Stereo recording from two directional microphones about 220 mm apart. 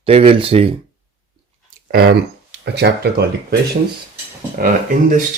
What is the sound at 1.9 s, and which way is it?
Speech, 45° right (ahead or behind).